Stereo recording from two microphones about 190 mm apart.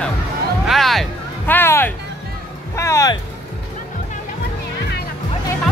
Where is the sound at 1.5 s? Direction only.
10° left (ahead or behind).